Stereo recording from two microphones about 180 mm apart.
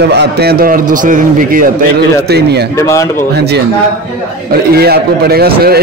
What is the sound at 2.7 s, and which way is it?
Speech, 15° left (ahead or behind).